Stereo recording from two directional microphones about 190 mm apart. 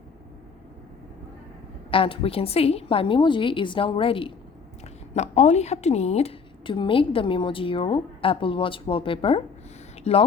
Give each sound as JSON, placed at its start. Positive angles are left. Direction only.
{"t": 1.9, "sound": "a woman's voice", "side_deg": 30}